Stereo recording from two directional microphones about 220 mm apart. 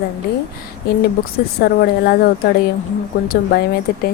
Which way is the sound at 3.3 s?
45° left (ahead or behind).